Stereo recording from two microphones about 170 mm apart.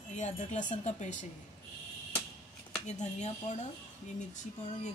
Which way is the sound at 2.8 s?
45° left (ahead or behind).